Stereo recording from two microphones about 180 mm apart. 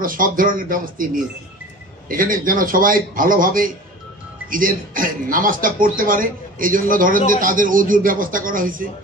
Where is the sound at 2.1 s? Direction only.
50° right (ahead or behind).